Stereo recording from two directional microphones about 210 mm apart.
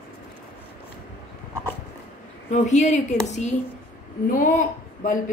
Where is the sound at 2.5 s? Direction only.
35° left (ahead or behind).